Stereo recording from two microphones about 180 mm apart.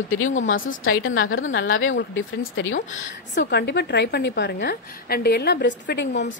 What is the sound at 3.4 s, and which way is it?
A woman's voice, 70° left (ahead or behind).